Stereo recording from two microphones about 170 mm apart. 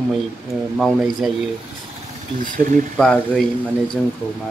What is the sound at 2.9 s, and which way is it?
Speech, 5° left (ahead or behind).